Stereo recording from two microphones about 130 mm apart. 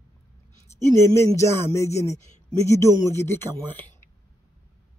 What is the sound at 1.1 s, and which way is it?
Speech, 20° left (ahead or behind).